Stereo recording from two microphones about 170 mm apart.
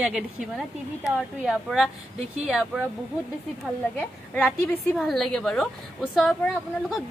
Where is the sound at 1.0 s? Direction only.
5° right (ahead or behind).